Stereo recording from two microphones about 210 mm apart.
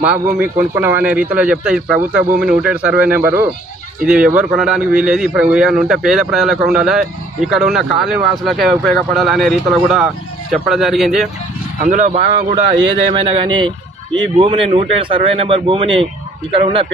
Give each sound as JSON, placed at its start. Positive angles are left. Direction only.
{"t": 0.0, "sound": "a man's voice", "side_deg": -5}
{"t": 11.8, "sound": "a man's voice", "side_deg": -35}